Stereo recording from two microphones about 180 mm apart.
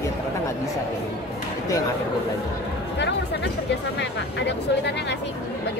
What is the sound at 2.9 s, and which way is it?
Speech, 75° left (ahead or behind).